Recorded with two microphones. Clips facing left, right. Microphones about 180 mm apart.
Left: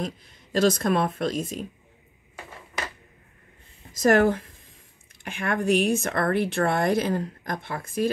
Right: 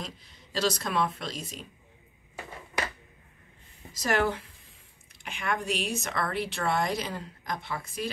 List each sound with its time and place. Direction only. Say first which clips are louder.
0.0 s speech: left 9 dB; 50° left (ahead or behind)
3.9 s speech: left 8 dB; 50° left (ahead or behind)